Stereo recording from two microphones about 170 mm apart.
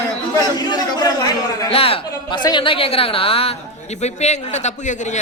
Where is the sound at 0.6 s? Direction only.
25° left (ahead or behind).